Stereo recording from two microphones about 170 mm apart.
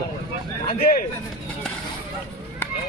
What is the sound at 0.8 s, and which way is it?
Speech, 60° left (ahead or behind).